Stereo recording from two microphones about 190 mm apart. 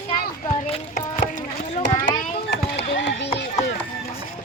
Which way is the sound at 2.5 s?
65° left (ahead or behind).